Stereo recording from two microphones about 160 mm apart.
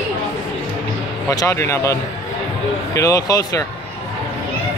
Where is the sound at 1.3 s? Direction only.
20° left (ahead or behind).